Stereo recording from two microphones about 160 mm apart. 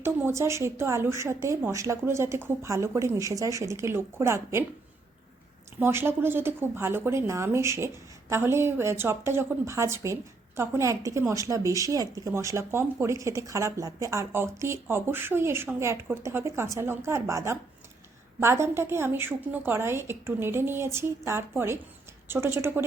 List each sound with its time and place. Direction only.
0.0 s a woman's voice: 15° right (ahead or behind)
5.8 s a woman's voice: 15° right (ahead or behind)